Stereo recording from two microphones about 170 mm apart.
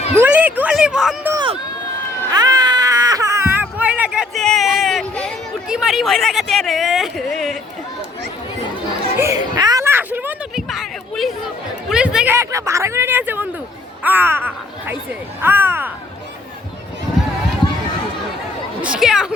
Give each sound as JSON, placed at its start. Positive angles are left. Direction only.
{"t": 0.2, "sound": "speech", "side_deg": -10}
{"t": 1.3, "sound": "speech", "side_deg": -25}
{"t": 9.1, "sound": "a sound", "side_deg": -20}
{"t": 10.7, "sound": "speech", "side_deg": 0}
{"t": 18.8, "sound": "speech", "side_deg": -5}